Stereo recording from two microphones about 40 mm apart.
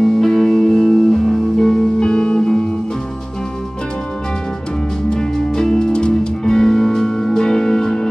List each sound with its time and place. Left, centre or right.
0.0 s music: centre
1.7 s music: centre
5.1 s music: centre